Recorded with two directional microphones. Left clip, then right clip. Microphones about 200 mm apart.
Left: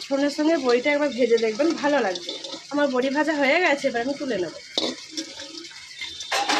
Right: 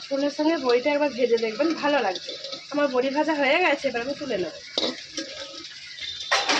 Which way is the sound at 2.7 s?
35° left (ahead or behind).